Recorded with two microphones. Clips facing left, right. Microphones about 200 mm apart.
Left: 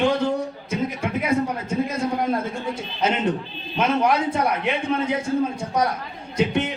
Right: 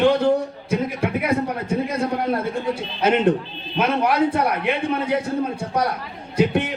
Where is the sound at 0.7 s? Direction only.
60° right (ahead or behind).